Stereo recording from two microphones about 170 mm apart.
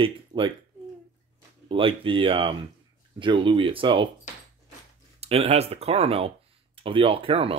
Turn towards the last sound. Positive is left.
turn(degrees=-35)  # may be behind; listen again after turning